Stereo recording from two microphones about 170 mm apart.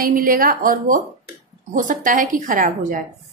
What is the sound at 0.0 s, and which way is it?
A woman's voice, 55° right (ahead or behind).